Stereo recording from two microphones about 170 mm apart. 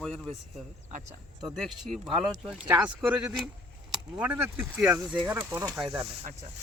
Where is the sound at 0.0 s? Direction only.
Centre (ahead or behind).